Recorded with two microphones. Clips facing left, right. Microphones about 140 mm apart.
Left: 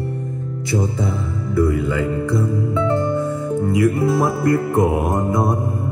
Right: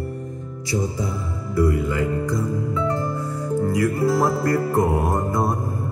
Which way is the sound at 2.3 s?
25° left (ahead or behind).